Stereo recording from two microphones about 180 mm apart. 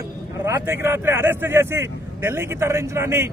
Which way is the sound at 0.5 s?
15° right (ahead or behind).